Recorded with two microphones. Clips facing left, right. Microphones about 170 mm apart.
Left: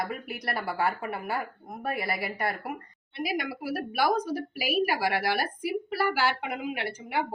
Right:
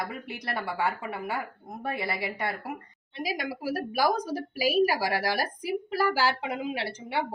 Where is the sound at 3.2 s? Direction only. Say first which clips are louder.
Left 1 dB; 35° right (ahead or behind).